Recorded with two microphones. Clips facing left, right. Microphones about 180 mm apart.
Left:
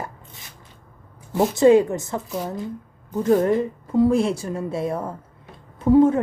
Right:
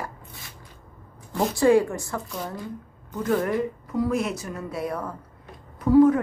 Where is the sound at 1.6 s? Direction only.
20° left (ahead or behind).